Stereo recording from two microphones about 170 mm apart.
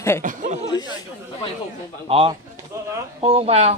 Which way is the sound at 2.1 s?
35° right (ahead or behind).